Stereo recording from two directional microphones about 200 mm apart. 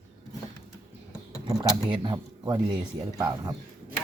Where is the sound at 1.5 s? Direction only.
20° right (ahead or behind).